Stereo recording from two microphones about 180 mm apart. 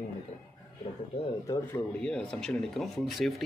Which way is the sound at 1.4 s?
20° left (ahead or behind).